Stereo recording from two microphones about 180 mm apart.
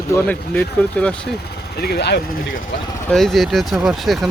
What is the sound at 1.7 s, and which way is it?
Speech, 60° left (ahead or behind).